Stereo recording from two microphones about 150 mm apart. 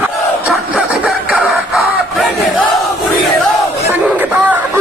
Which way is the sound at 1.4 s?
Centre (ahead or behind).